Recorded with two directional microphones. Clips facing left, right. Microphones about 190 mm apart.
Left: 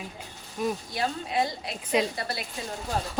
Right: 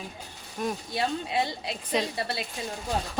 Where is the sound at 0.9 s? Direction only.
25° right (ahead or behind).